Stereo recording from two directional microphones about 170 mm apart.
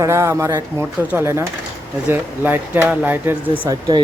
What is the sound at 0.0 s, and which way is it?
Speech, 15° right (ahead or behind).